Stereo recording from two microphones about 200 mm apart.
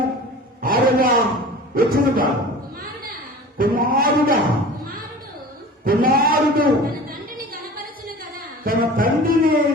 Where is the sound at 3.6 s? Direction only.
45° right (ahead or behind).